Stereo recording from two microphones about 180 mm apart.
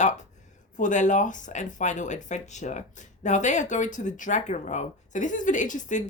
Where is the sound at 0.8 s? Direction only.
45° left (ahead or behind).